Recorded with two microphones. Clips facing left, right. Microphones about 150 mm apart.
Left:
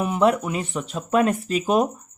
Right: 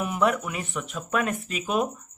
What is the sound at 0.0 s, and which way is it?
Speech, 30° left (ahead or behind).